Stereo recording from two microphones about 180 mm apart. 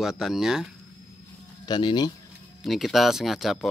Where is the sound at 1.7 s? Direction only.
25° left (ahead or behind).